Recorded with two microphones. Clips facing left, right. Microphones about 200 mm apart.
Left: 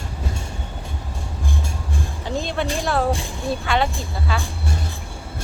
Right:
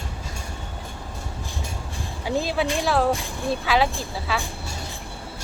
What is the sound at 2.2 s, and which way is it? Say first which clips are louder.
Speech: right 2 dB; 5° right (ahead or behind).